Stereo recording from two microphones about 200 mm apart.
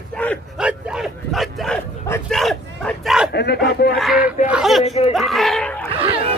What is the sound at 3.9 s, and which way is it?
Speech, centre (ahead or behind).